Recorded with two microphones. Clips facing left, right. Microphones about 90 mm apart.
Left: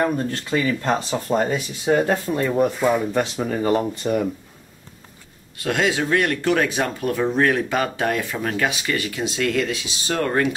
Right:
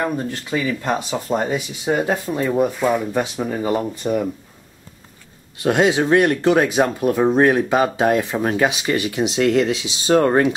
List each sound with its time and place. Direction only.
0.0 s speech: 10° right (ahead or behind)
3.1 s speech: 10° right (ahead or behind)
5.6 s speech: 25° right (ahead or behind)